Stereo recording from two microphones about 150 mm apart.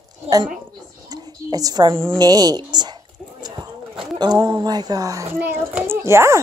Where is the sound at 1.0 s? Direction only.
25° right (ahead or behind).